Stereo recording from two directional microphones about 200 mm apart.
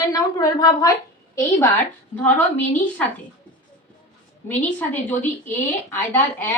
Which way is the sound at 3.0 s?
5° left (ahead or behind).